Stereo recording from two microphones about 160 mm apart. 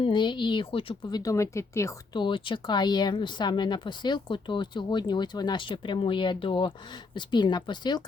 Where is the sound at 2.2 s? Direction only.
30° left (ahead or behind).